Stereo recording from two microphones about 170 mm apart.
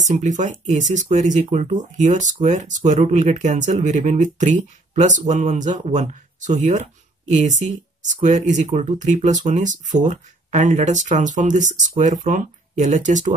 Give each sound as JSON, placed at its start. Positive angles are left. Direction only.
{"t": 0.0, "sound": "speech", "side_deg": -45}